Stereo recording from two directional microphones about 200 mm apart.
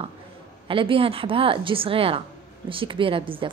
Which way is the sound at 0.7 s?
25° right (ahead or behind).